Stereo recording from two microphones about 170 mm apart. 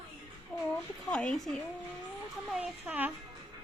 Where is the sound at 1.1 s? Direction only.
5° left (ahead or behind).